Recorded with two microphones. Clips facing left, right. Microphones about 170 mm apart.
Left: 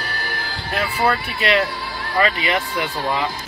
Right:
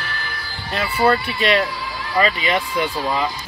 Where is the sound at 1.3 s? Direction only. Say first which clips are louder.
Right 1 dB; 5° left (ahead or behind).